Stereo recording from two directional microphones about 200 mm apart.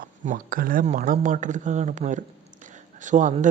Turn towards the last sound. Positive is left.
turn(degrees=-40)  # may be behind; listen again after turning